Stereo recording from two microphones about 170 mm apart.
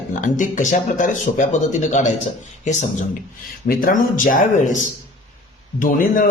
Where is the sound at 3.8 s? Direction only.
50° left (ahead or behind).